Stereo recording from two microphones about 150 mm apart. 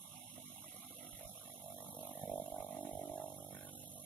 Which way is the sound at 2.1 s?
10° left (ahead or behind).